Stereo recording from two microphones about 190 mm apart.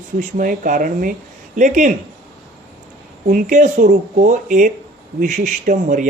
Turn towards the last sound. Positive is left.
turn(degrees=-40)  # may be behind; listen again after turning